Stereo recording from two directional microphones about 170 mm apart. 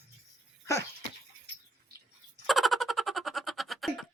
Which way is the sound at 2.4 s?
Centre (ahead or behind).